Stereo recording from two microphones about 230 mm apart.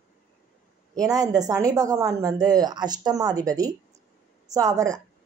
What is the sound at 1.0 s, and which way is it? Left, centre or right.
A woman's voice, centre.